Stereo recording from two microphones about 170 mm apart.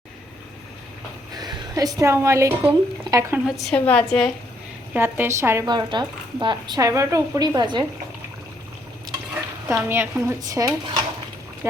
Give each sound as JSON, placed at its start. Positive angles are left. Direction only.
{"t": 1.3, "sound": "speech", "side_deg": -20}
{"t": 3.4, "sound": "a woman's voice", "side_deg": 0}
{"t": 4.9, "sound": "a woman's voice", "side_deg": -10}
{"t": 9.6, "sound": "speech", "side_deg": -15}